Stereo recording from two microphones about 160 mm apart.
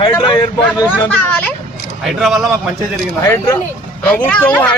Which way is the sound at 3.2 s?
20° left (ahead or behind).